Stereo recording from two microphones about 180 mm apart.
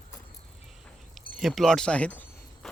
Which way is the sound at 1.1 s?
Centre (ahead or behind).